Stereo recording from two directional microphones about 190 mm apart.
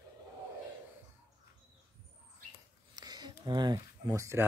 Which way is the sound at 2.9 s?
20° right (ahead or behind).